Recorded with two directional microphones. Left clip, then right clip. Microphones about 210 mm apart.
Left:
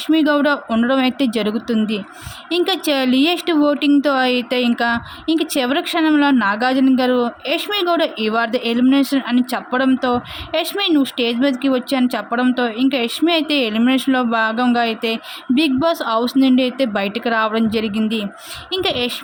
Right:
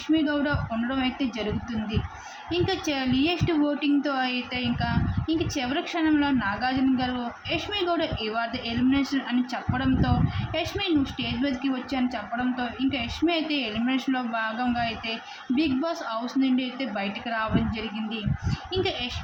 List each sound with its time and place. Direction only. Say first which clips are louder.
0.1 s speech: left 10 dB; 50° left (ahead or behind)